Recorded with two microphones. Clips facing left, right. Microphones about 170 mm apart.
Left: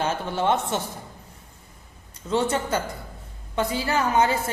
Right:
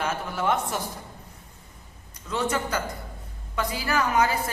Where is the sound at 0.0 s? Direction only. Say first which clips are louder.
Left 3 dB; 30° left (ahead or behind).